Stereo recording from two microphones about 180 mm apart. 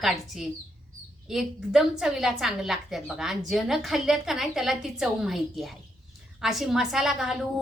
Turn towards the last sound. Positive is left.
turn(degrees=0)  # may be behind; listen again after turning